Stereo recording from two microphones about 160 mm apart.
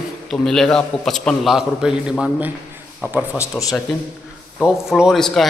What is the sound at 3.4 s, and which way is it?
Speech, 20° left (ahead or behind).